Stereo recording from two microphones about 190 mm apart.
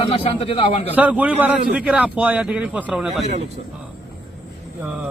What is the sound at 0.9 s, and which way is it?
A man's voice, 10° right (ahead or behind).